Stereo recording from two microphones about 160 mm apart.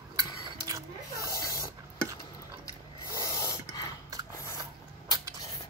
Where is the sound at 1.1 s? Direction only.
20° left (ahead or behind).